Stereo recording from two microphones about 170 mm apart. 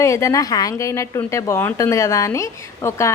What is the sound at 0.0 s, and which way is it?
A woman's voice, 15° left (ahead or behind).